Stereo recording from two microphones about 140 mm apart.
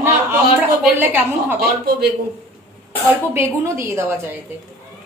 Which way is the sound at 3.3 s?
20° right (ahead or behind).